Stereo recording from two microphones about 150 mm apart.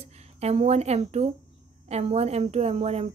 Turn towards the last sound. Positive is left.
turn(degrees=-45)  # may be behind; listen again after turning